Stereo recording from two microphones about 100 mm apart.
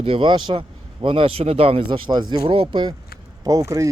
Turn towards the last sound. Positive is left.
turn(degrees=-30)  # may be behind; listen again after turning